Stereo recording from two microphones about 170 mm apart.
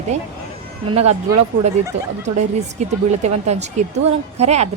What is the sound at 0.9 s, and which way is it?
Speech, 35° right (ahead or behind).